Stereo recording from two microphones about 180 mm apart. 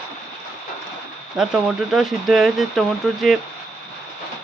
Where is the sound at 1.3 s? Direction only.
Centre (ahead or behind).